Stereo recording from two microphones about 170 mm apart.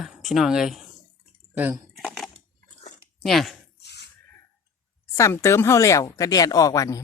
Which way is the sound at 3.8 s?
80° left.